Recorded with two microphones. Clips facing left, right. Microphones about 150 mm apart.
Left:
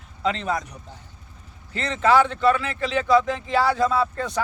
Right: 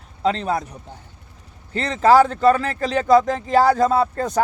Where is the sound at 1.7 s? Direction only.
35° right (ahead or behind).